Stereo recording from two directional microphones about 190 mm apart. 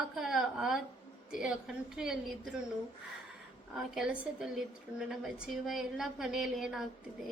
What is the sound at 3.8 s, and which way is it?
A woman's voice, 5° right (ahead or behind).